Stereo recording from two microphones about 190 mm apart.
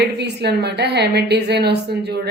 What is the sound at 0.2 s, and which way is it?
A woman's voice, 60° right (ahead or behind).